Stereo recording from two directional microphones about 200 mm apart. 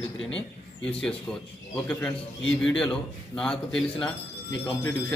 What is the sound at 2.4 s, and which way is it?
Speech, 70° left (ahead or behind).